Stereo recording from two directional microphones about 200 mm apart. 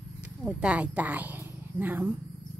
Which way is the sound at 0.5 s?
5° right (ahead or behind).